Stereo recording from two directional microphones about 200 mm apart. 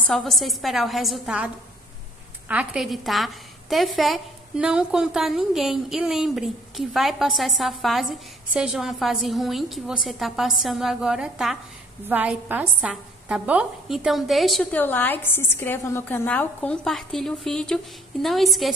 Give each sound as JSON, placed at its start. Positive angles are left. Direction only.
{"t": 0.0, "sound": "a woman's voice", "side_deg": 0}